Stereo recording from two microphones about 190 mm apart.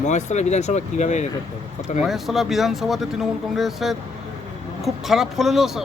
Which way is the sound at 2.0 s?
Centre (ahead or behind).